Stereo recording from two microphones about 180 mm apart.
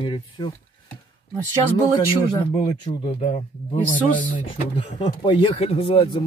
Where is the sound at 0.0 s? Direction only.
25° left (ahead or behind).